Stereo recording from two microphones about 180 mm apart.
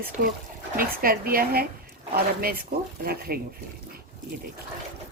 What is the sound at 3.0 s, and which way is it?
Speech, 55° right (ahead or behind).